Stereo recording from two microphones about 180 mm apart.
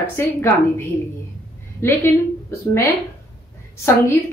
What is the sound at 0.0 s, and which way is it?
Speech, 10° left (ahead or behind).